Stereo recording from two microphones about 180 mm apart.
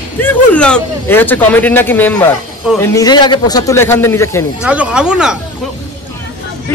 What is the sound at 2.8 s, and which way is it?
Speech, 20° left (ahead or behind).